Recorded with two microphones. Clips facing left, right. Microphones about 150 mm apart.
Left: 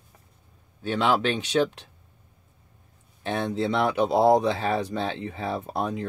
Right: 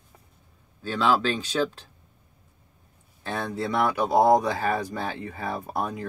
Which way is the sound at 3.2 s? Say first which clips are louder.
Left 3 dB; 20° left (ahead or behind).